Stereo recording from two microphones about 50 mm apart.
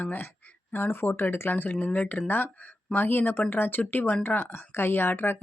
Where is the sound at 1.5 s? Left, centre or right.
Left.